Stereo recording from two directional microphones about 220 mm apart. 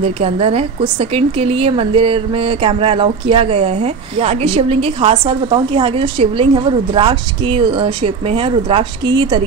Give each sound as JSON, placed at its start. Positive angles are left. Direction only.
{"t": 0.0, "sound": "speech", "side_deg": -25}